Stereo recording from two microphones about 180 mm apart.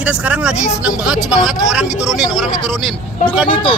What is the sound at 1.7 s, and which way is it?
Speech, 5° right (ahead or behind).